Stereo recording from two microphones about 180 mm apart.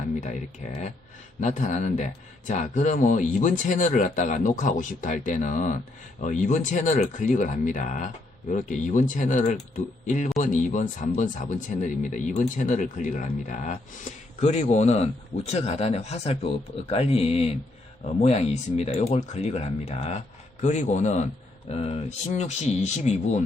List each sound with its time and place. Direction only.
0.2 s speech: 40° left (ahead or behind)